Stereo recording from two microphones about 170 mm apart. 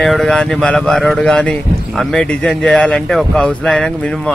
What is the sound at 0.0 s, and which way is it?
A man's voice, centre (ahead or behind).